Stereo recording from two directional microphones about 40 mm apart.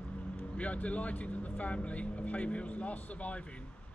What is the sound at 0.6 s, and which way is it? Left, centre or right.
Speech, left.